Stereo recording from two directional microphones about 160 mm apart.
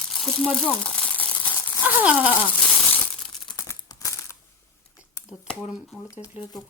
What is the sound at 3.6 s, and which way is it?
Crumpling, 20° left (ahead or behind).